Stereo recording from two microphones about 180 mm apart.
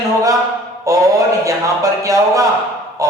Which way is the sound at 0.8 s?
20° right (ahead or behind).